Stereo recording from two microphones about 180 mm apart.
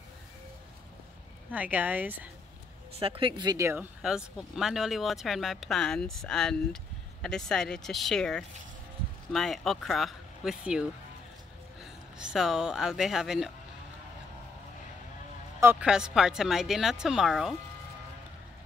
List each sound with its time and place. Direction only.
1.5 s speech: 10° right (ahead or behind)
3.0 s speech: 30° right (ahead or behind)
4.0 s speech: 5° right (ahead or behind)
15.6 s speech: 10° right (ahead or behind)